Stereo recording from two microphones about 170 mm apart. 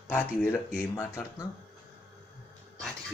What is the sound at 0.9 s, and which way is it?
Speech, 20° left (ahead or behind).